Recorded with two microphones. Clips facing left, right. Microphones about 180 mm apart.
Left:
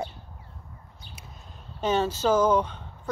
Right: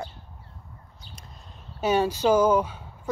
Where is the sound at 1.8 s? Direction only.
10° right (ahead or behind).